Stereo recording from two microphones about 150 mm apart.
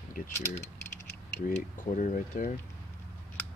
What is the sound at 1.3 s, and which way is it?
Speech, 60° left (ahead or behind).